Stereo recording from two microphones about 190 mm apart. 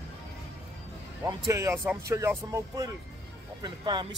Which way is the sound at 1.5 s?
15° right (ahead or behind).